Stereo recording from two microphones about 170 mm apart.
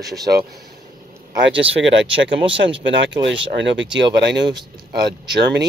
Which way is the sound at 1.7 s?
90° right.